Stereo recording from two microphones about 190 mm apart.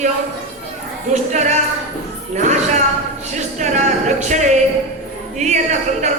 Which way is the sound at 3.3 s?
40° right (ahead or behind).